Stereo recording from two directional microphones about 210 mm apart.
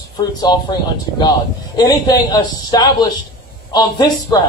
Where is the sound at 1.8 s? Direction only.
20° left (ahead or behind).